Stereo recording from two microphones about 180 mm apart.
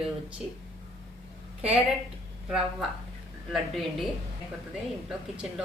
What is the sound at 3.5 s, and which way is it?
Speech, centre (ahead or behind).